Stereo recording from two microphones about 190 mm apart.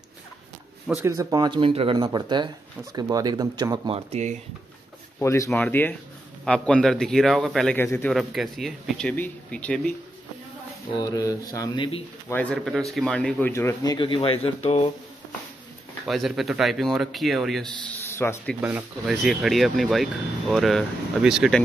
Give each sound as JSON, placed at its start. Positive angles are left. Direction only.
{"t": 1.0, "sound": "speech", "side_deg": -20}
{"t": 5.2, "sound": "speech", "side_deg": 15}
{"t": 8.1, "sound": "speech", "side_deg": 0}
{"t": 11.0, "sound": "speech", "side_deg": 20}
{"t": 12.3, "sound": "speech", "side_deg": 5}
{"t": 13.9, "sound": "speech", "side_deg": 25}
{"t": 16.1, "sound": "speech", "side_deg": 0}
{"t": 18.6, "sound": "speech", "side_deg": -10}